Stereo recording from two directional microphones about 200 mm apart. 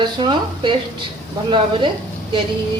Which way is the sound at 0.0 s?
25° right (ahead or behind).